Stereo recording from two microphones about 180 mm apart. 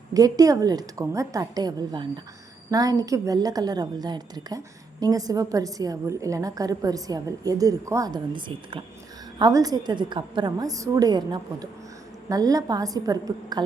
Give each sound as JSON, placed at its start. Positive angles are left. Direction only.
{"t": 0.1, "sound": "a woman's voice", "side_deg": -20}